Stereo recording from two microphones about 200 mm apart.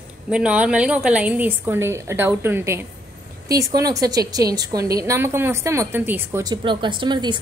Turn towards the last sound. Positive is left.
turn(degrees=-20)  # may be behind; listen again after turning